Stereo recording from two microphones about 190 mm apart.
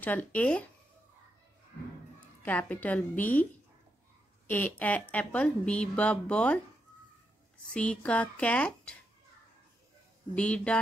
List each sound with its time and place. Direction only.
0.0 s speech: 10° left (ahead or behind)
2.1 s speech: 10° left (ahead or behind)
4.5 s speech: 10° left (ahead or behind)
7.7 s speech: 5° left (ahead or behind)
10.3 s speech: 5° left (ahead or behind)